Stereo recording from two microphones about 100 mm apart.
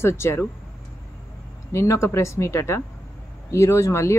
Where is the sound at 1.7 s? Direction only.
30° left (ahead or behind).